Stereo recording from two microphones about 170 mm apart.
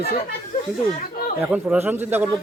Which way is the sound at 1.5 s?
5° right (ahead or behind).